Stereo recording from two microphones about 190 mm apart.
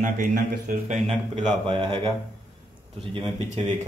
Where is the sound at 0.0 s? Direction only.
45° right (ahead or behind).